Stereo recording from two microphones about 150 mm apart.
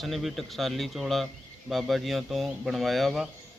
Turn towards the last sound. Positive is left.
turn(degrees=0)  # may be behind; listen again after turning